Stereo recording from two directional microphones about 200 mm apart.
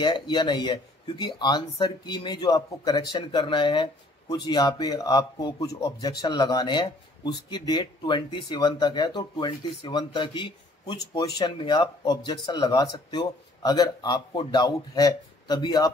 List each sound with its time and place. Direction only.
0.0 s speech: 20° left (ahead or behind)